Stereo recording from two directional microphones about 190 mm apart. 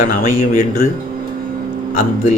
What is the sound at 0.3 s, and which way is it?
Speech, 40° left (ahead or behind).